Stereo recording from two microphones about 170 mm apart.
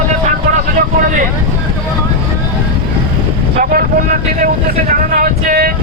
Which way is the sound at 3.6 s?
55° right (ahead or behind).